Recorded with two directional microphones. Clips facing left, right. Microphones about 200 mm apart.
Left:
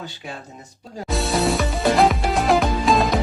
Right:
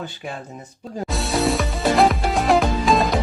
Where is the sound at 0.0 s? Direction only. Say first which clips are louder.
Right 3 dB; 55° right (ahead or behind).